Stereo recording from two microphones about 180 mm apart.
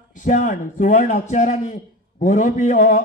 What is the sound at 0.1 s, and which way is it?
A man's voice, 45° left (ahead or behind).